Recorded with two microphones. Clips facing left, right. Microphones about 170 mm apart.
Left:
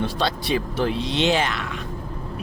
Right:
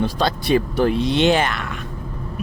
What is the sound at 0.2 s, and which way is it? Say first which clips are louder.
Speech: right 6 dB; 50° right (ahead or behind).